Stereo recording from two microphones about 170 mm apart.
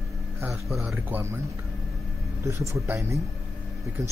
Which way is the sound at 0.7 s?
5° right (ahead or behind).